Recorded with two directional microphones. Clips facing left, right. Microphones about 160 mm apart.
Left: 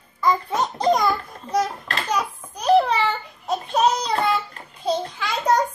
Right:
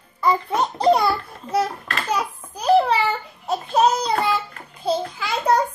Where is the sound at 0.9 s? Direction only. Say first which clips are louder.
Right 1 dB; 10° right (ahead or behind).